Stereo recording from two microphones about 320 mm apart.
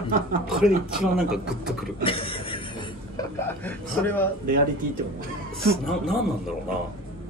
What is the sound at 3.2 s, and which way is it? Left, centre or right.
A man's voice, centre.